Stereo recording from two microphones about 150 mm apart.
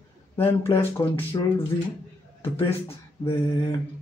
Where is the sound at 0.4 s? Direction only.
40° left (ahead or behind).